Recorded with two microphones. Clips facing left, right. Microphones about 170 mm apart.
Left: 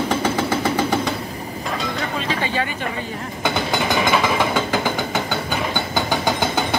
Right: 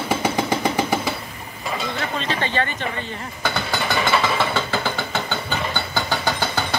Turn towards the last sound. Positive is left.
turn(degrees=15)  # may be behind; listen again after turning